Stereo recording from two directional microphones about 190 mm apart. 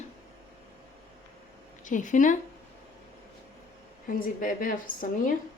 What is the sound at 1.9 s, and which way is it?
Speech, 40° left (ahead or behind).